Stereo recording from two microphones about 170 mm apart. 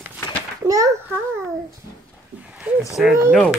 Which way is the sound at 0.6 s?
20° right (ahead or behind).